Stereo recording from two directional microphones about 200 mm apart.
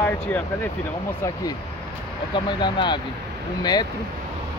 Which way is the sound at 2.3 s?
25° left (ahead or behind).